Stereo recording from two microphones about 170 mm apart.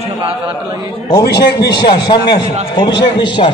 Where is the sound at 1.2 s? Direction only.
70° left (ahead or behind).